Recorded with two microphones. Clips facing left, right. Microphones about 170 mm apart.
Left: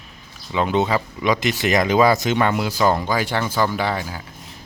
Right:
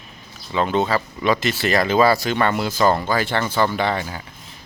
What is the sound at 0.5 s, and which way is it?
Speech, 15° left (ahead or behind).